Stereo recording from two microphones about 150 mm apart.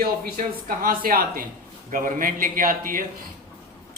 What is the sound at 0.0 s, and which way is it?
Speech, 75° right (ahead or behind).